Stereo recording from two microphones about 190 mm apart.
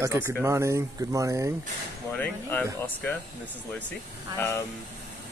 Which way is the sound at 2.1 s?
10° left (ahead or behind).